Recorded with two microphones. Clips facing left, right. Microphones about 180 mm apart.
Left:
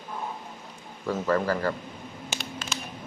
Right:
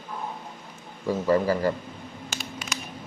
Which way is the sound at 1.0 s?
15° right (ahead or behind).